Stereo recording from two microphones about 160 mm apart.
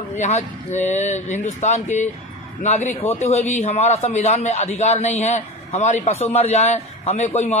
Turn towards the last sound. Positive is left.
turn(degrees=40)  # may be behind; listen again after turning